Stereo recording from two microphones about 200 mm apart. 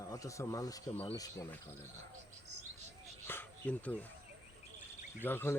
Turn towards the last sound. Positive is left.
turn(degrees=10)  # may be behind; listen again after turning